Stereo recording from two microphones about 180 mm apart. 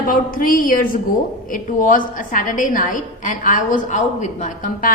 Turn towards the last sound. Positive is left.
turn(degrees=50)  # may be behind; listen again after turning